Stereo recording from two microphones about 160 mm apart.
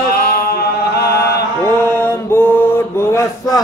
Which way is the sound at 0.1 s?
75° left (ahead or behind).